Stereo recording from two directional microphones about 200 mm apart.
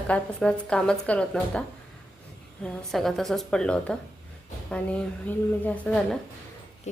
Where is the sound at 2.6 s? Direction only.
5° left (ahead or behind).